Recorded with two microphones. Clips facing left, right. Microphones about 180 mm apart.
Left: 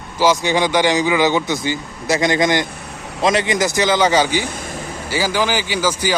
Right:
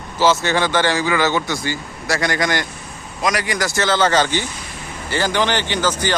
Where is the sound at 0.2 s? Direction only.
15° left (ahead or behind).